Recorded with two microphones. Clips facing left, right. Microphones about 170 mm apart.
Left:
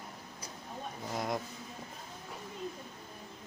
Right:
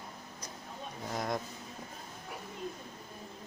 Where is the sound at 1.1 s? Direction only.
5° left (ahead or behind).